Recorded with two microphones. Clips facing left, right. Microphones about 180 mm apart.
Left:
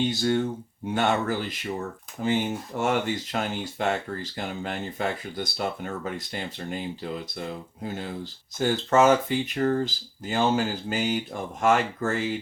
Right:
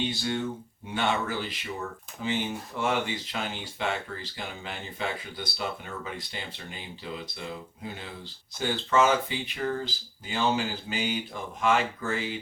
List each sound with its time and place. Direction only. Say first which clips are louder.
0.1 s speech: left 6 dB; 45° left (ahead or behind)